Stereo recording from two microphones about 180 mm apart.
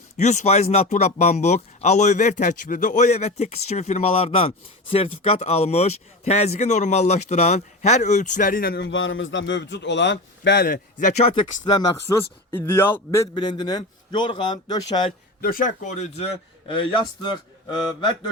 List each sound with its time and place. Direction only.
0.2 s speech: 40° left (ahead or behind); by 10.8 s 65° left (ahead or behind)
11.0 s a man's voice: 35° left (ahead or behind)
15.4 s speech: 55° left (ahead or behind)
16.6 s a man's voice: 30° left (ahead or behind)